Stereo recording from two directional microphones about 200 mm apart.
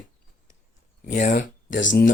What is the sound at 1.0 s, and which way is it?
Speech, 40° left (ahead or behind).